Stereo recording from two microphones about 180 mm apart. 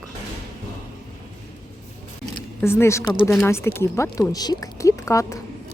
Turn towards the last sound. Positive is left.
turn(degrees=15)  # may be behind; listen again after turning